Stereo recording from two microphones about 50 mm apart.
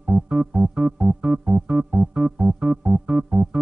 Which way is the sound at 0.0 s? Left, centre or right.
Centre.